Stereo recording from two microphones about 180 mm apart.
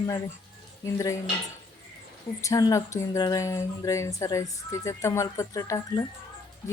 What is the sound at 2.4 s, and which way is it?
Speech, 15° left (ahead or behind).